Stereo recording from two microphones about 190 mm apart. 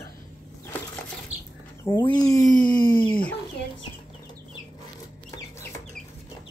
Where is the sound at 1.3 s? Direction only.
35° right (ahead or behind).